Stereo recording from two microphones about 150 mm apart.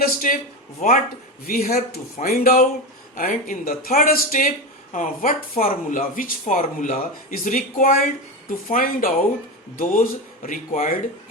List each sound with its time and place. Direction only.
0.0 s speech: 65° left (ahead or behind)
0.8 s speech: 50° left (ahead or behind)
1.5 s speech: 85° left
3.2 s speech: 65° left (ahead or behind)